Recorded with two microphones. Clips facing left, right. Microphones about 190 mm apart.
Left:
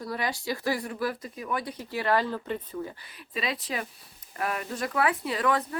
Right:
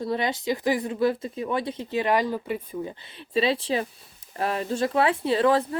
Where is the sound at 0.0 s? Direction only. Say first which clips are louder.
Right 5 dB; 25° right (ahead or behind).